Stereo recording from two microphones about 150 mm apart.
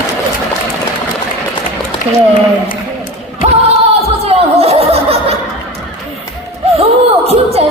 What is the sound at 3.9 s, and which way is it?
Chuckle, 45° right (ahead or behind).